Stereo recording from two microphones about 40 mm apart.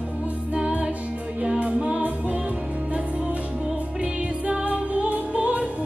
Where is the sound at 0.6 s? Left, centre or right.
Right.